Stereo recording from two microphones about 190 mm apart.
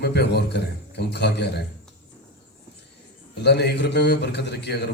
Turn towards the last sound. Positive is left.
turn(degrees=60)  # may be behind; listen again after turning